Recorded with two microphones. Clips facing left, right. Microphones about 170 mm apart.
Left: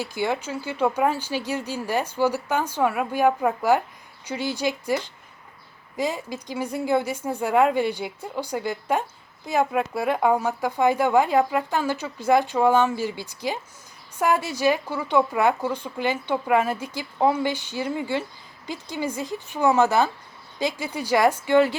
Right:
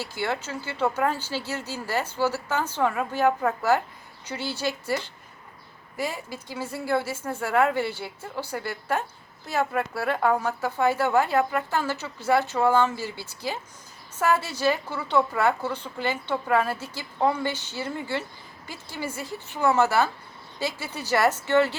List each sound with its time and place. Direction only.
0.0 s a woman's voice: 15° left (ahead or behind)